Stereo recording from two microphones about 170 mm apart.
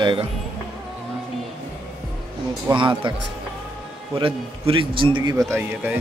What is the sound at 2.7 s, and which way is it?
Speech, 30° right (ahead or behind).